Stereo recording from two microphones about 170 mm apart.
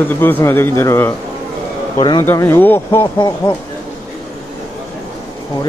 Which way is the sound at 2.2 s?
15° left (ahead or behind).